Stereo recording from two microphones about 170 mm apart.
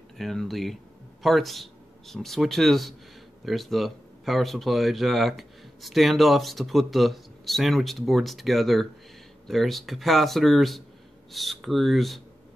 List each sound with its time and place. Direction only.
0.2 s speech: centre (ahead or behind)